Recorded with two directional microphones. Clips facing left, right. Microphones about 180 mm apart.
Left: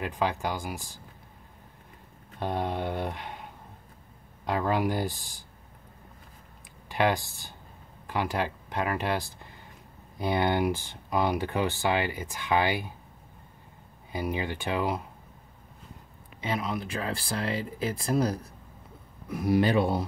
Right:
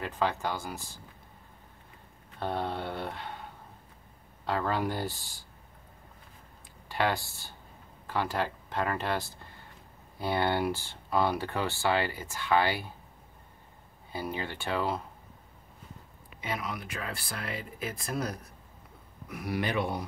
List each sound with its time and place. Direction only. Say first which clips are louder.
0.0 s speech: left 2 dB; 15° left (ahead or behind)
2.4 s speech: left 3 dB; 15° left (ahead or behind)
4.5 s speech: left 3 dB; 15° left (ahead or behind)
6.9 s speech: left 4 dB; 15° left (ahead or behind)
14.1 s speech: left 4 dB; 15° left (ahead or behind)
16.3 s speech: left 5 dB; 25° left (ahead or behind)